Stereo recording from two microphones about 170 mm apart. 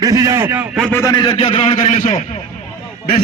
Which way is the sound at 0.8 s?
5° left (ahead or behind).